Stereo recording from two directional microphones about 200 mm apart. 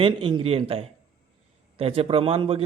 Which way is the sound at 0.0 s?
25° right (ahead or behind).